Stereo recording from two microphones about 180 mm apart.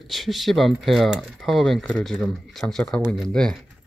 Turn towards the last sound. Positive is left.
turn(degrees=5)  # may be behind; listen again after turning